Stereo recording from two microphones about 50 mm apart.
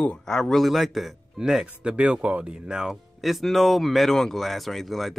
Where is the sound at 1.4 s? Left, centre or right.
Centre.